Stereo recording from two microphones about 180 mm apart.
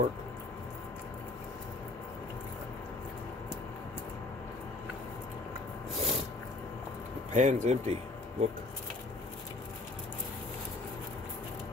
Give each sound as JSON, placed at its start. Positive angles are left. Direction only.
{"t": 5.9, "sound": "snort", "side_deg": -35}
{"t": 7.3, "sound": "speech", "side_deg": -40}